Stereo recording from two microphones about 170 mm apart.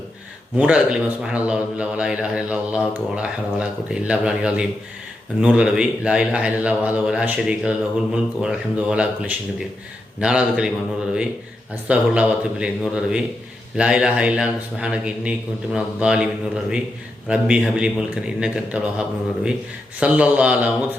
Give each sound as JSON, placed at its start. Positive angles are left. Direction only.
{"t": 0.5, "sound": "a man's voice", "side_deg": -5}